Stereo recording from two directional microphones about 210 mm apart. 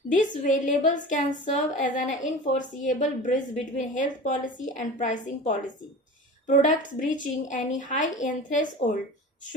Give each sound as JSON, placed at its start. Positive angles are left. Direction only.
{"t": 0.1, "sound": "a woman's voice", "side_deg": 35}